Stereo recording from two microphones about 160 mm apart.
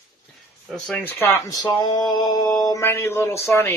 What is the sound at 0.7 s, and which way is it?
Speech, 10° left (ahead or behind).